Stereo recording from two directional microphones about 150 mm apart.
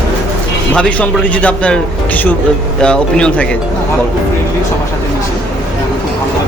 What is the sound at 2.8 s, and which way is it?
Speech, 5° left (ahead or behind).